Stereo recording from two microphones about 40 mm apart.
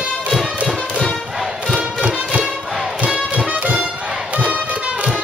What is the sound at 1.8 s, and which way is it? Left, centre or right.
Music, right.